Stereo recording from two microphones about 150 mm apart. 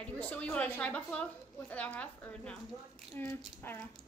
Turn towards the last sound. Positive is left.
turn(degrees=15)  # may be behind; listen again after turning